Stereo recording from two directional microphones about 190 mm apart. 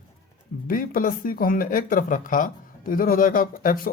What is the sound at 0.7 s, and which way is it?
Speech, 45° left (ahead or behind).